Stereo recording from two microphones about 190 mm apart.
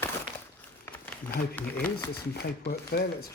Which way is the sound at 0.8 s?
10° left (ahead or behind).